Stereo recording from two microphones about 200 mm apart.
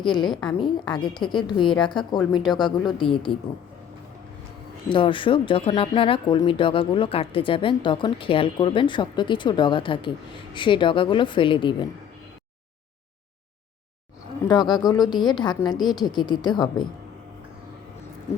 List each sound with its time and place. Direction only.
0.3 s a woman's voice: 5° left (ahead or behind)
0.6 s speech: 20° left (ahead or behind)
4.9 s speech: 25° left (ahead or behind)
14.4 s speech: 20° left (ahead or behind)